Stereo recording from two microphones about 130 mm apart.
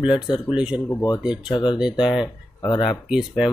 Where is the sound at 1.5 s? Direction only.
35° left (ahead or behind).